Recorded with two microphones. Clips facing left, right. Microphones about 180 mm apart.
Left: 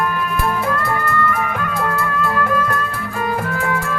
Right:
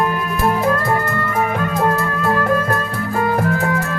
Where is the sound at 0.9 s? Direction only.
35° right (ahead or behind).